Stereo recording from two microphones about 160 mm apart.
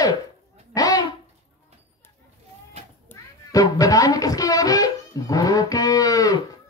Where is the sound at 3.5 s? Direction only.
20° left (ahead or behind).